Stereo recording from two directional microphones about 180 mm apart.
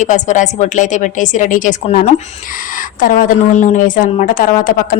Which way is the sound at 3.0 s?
50° left (ahead or behind).